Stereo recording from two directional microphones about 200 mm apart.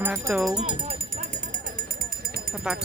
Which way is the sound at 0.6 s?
30° right (ahead or behind).